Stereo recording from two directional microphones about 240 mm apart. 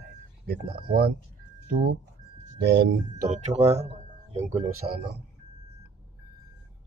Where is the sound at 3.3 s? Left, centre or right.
Right.